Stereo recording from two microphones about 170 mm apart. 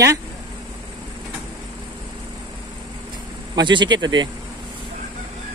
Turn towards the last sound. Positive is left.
turn(degrees=-25)  # may be behind; listen again after turning